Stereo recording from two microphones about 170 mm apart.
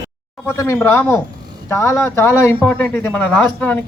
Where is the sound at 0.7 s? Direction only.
10° left (ahead or behind).